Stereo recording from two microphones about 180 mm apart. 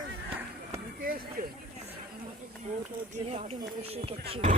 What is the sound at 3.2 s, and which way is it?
Speech, 35° right (ahead or behind).